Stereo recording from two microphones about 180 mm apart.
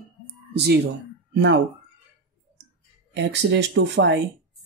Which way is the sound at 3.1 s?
75° right (ahead or behind).